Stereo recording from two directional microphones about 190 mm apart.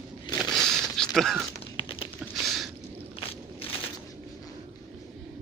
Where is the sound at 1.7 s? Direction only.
25° left (ahead or behind).